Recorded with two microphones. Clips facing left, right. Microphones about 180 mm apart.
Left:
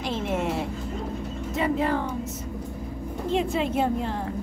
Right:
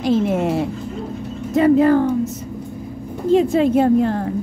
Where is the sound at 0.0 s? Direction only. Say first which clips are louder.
Right 10 dB; 40° right (ahead or behind).